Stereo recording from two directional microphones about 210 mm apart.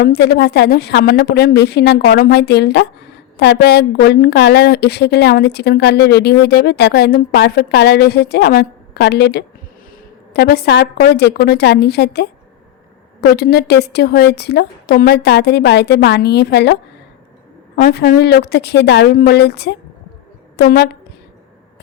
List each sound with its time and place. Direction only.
0.0 s a woman's voice: 50° left (ahead or behind)
13.3 s a woman's voice: 50° left (ahead or behind)
17.7 s a woman's voice: 40° left (ahead or behind)